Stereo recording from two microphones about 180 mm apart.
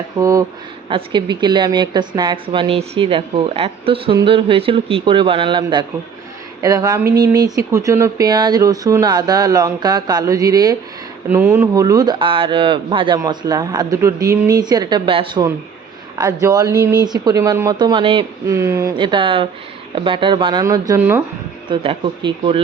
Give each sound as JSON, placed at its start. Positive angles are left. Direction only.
{"t": 0.2, "sound": "a woman's voice", "side_deg": -20}
{"t": 0.9, "sound": "a woman's voice", "side_deg": -30}
{"t": 18.4, "sound": "speech", "side_deg": -15}
{"t": 18.9, "sound": "a woman's voice", "side_deg": -25}
{"t": 21.7, "sound": "a woman's voice", "side_deg": -30}